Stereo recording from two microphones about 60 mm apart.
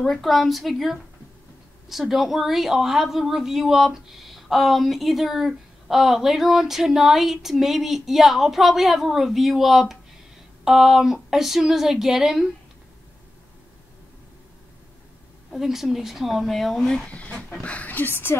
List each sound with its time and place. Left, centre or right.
0.0 s a woman's voice: centre
15.5 s a woman's voice: centre; by 18.1 s left